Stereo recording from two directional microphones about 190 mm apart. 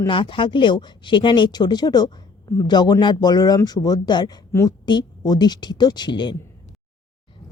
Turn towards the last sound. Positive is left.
turn(degrees=25)  # may be behind; listen again after turning